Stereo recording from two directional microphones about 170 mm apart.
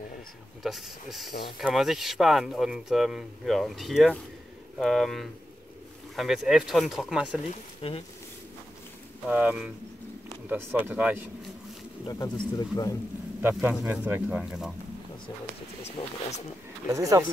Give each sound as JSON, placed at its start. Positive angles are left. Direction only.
{"t": 0.7, "sound": "speech", "side_deg": 0}
{"t": 7.8, "sound": "speech", "side_deg": 35}
{"t": 9.3, "sound": "speech", "side_deg": -10}
{"t": 12.1, "sound": "speech", "side_deg": 20}
{"t": 13.4, "sound": "speech", "side_deg": -10}
{"t": 15.8, "sound": "speech", "side_deg": 40}
{"t": 16.9, "sound": "speech", "side_deg": -20}